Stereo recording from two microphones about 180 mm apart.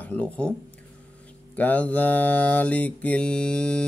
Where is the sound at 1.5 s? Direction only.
10° left (ahead or behind).